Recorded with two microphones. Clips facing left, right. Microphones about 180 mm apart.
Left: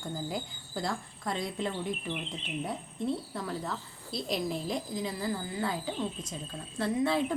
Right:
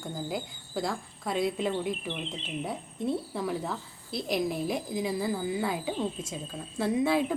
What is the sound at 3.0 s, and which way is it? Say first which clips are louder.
Speech: right 3 dB; 15° right (ahead or behind).